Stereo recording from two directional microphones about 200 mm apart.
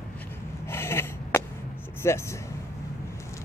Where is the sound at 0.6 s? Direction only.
10° left (ahead or behind).